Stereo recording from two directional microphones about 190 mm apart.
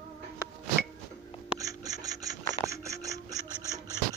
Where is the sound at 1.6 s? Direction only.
20° right (ahead or behind).